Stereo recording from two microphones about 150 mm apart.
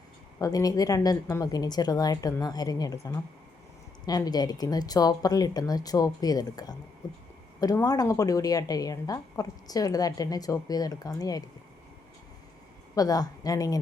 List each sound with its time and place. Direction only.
0.3 s a woman's voice: 25° left (ahead or behind)
13.0 s a woman's voice: 25° left (ahead or behind)